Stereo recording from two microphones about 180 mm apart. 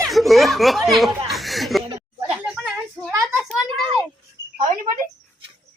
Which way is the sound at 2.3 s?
5° right (ahead or behind).